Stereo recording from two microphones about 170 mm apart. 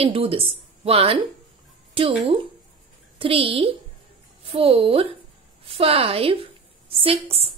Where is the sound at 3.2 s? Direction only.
35° right (ahead or behind).